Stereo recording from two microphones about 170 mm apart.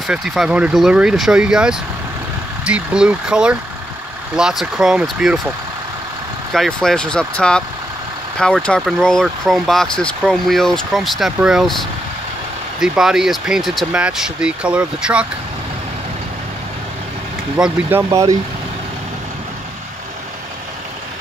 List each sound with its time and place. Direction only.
0.0 s speech: centre (ahead or behind)
6.5 s speech: centre (ahead or behind)
12.8 s speech: 5° right (ahead or behind)
17.6 s speech: 15° right (ahead or behind)